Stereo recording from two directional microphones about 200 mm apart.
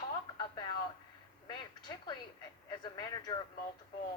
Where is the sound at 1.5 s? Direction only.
20° left (ahead or behind).